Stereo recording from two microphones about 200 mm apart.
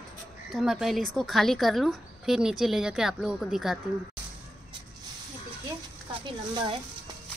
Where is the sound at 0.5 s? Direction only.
Centre (ahead or behind).